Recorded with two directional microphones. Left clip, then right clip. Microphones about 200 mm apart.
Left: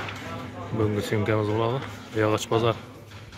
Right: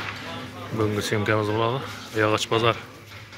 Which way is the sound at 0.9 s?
5° left (ahead or behind).